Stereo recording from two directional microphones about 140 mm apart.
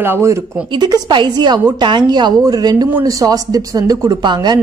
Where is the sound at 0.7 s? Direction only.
30° right (ahead or behind).